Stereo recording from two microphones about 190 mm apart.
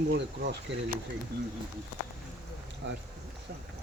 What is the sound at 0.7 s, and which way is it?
Speech, 70° right (ahead or behind).